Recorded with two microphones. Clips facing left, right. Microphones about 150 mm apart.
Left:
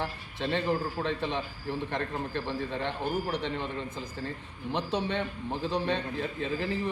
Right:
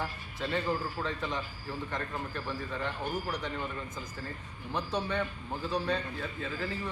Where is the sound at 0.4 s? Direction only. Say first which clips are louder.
Left 3 dB; 25° left (ahead or behind).